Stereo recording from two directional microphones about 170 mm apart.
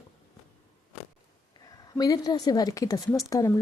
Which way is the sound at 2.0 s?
20° left (ahead or behind).